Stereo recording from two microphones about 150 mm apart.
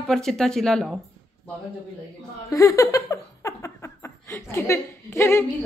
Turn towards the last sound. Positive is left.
turn(degrees=20)  # may be behind; listen again after turning